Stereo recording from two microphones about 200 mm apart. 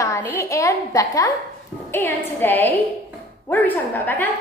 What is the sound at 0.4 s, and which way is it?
A woman's voice, 15° left (ahead or behind).